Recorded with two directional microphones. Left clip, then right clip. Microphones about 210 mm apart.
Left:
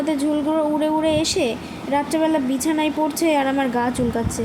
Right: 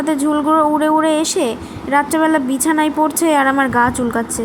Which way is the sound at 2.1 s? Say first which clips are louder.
Right 3 dB; 65° right (ahead or behind).